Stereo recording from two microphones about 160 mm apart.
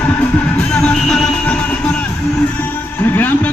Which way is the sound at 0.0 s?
10° left (ahead or behind).